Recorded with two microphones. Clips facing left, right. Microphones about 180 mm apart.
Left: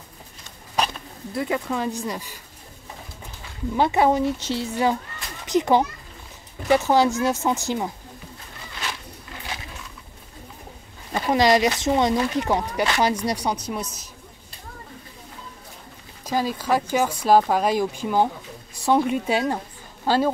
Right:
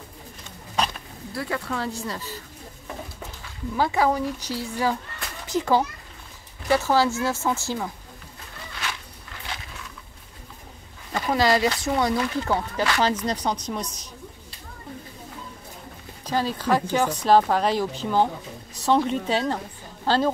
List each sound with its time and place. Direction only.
1.3 s speech: 20° left (ahead or behind)
3.7 s speech: 20° left (ahead or behind)
11.1 s speech: 20° left (ahead or behind)
16.3 s speech: 10° left (ahead or behind)